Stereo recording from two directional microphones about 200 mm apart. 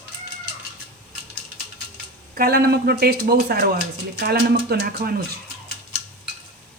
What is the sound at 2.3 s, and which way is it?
A man's voice, 50° right (ahead or behind).